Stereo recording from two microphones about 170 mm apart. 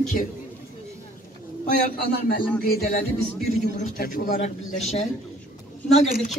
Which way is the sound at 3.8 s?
55° left (ahead or behind).